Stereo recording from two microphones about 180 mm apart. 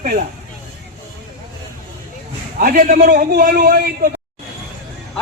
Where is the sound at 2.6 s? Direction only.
45° right (ahead or behind).